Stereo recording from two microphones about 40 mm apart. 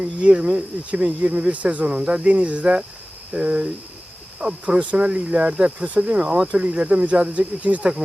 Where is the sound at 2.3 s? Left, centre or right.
Right.